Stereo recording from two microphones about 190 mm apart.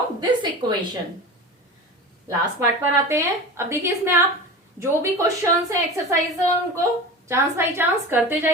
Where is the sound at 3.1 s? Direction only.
15° right (ahead or behind).